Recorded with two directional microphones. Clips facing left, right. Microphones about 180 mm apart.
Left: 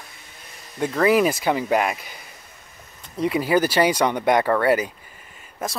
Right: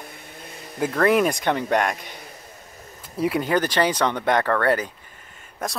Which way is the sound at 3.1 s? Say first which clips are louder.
Left 2 dB; centre (ahead or behind).